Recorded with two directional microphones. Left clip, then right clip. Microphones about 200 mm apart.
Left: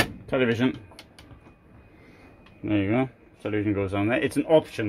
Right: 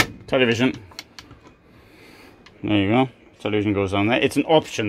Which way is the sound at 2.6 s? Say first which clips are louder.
Right 5 dB; 35° right (ahead or behind).